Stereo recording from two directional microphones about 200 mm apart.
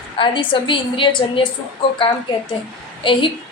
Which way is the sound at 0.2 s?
25° left (ahead or behind).